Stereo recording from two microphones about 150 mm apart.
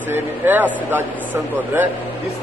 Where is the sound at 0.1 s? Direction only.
10° right (ahead or behind).